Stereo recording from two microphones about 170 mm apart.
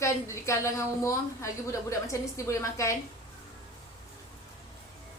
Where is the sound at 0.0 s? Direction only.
15° left (ahead or behind).